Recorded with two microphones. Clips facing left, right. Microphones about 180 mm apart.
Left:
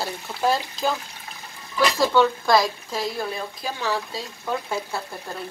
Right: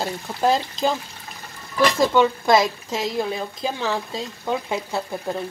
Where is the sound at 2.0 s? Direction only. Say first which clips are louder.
Even; 15° right (ahead or behind).